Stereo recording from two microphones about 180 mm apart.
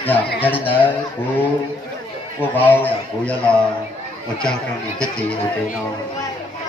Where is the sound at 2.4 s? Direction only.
10° left (ahead or behind).